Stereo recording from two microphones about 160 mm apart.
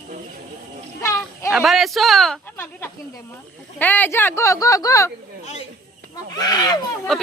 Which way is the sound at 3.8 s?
10° left (ahead or behind).